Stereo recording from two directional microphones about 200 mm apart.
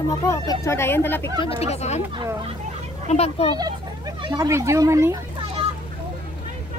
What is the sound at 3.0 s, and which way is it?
Speech, 30° left (ahead or behind).